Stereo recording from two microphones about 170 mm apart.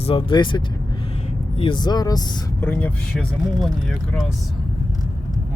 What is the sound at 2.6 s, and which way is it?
Speech, 10° left (ahead or behind).